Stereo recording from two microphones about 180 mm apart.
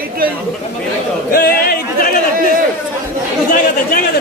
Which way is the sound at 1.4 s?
55° left (ahead or behind).